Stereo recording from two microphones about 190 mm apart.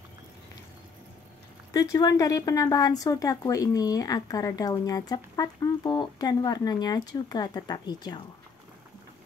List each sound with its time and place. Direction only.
1.7 s speech: 20° left (ahead or behind)